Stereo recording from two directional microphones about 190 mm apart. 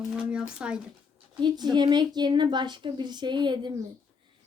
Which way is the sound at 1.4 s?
20° right (ahead or behind).